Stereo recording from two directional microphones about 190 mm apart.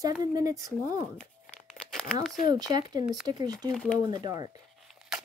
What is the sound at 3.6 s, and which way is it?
Speech, 5° left (ahead or behind).